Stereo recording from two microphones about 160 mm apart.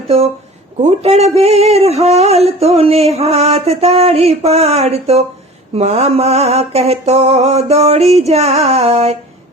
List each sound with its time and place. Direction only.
0.8 s speech: 40° right (ahead or behind)